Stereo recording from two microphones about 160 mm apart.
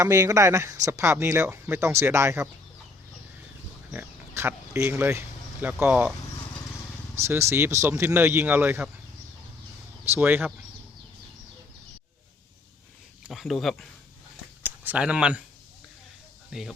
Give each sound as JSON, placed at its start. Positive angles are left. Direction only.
{"t": 0.0, "sound": "speech", "side_deg": -15}
{"t": 3.9, "sound": "speech", "side_deg": -15}
{"t": 7.2, "sound": "speech", "side_deg": -15}
{"t": 10.1, "sound": "speech", "side_deg": -10}
{"t": 13.2, "sound": "speech", "side_deg": 0}
{"t": 16.5, "sound": "speech", "side_deg": 0}